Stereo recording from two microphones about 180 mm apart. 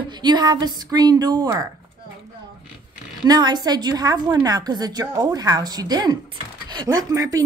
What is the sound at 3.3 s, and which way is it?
A woman's voice, 25° right (ahead or behind).